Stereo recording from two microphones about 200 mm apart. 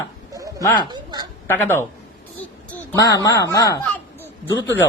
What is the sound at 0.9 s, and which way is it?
Speech, 20° right (ahead or behind).